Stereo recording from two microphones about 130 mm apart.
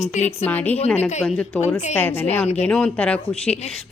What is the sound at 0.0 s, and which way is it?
Speech, 60° left (ahead or behind).